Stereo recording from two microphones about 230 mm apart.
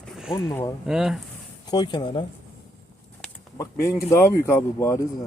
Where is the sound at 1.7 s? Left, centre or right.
Centre.